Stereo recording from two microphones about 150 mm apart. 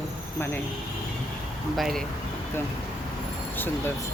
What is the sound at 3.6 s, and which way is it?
Speech, 15° left (ahead or behind).